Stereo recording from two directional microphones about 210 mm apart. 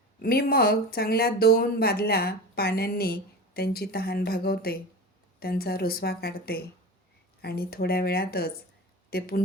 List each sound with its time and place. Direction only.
0.2 s speech: 45° left (ahead or behind)